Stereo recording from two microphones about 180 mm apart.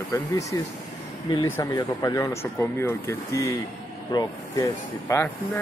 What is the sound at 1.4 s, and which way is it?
Speech, 15° left (ahead or behind).